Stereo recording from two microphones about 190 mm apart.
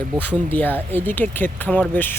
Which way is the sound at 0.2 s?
10° left (ahead or behind).